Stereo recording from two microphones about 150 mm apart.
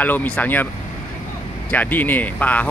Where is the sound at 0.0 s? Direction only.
10° left (ahead or behind).